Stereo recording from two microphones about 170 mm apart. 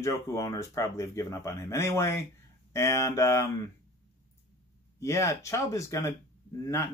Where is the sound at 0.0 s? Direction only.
20° left (ahead or behind).